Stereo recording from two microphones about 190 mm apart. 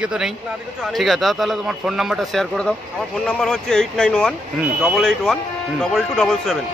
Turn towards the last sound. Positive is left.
turn(degrees=0)  # may be behind; listen again after turning